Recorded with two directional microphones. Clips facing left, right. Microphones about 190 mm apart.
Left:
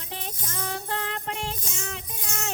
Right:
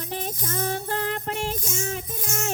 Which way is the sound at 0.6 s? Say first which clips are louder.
Right 4 dB; 40° right (ahead or behind).